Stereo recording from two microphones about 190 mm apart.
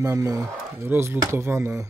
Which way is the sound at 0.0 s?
15° right (ahead or behind).